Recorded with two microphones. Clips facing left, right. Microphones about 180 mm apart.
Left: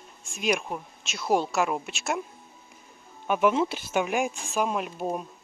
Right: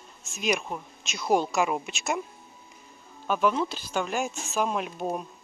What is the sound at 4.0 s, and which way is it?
Speech, 10° left (ahead or behind).